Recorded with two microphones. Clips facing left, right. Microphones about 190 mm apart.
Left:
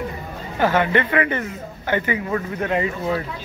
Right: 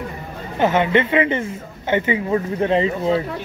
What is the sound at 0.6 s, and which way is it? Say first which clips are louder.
A woman's voice: right 2 dB; 20° right (ahead or behind).